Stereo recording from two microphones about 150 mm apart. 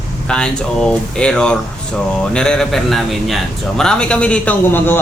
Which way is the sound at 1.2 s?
5° left (ahead or behind).